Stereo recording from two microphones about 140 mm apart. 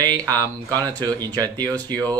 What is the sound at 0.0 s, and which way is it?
Speech, 30° right (ahead or behind).